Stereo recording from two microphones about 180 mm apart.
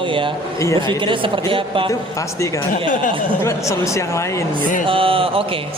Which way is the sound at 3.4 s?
15° left (ahead or behind).